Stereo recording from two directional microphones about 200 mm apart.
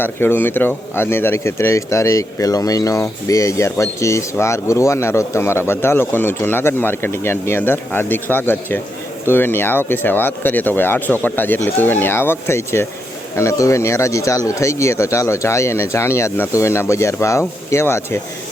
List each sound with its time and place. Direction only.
0.0 s speech: 10° left (ahead or behind)